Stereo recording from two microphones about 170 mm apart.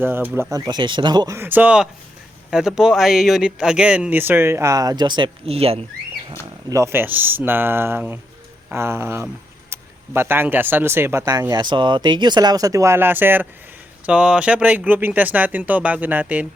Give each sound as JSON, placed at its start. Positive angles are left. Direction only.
{"t": 0.0, "sound": "speech", "side_deg": -10}
{"t": 1.4, "sound": "speech", "side_deg": -10}
{"t": 6.7, "sound": "speech", "side_deg": -15}